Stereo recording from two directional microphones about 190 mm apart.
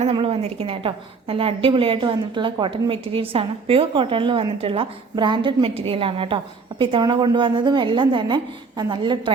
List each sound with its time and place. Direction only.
0.0 s a woman's voice: 30° right (ahead or behind)